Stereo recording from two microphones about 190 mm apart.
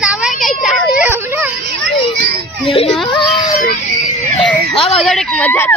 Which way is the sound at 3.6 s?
40° left (ahead or behind).